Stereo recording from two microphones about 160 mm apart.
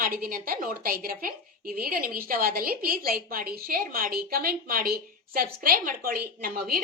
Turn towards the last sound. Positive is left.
turn(degrees=-65)  # may be behind; listen again after turning